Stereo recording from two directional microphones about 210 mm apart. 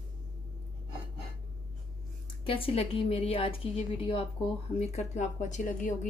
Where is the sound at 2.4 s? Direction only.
25° left (ahead or behind).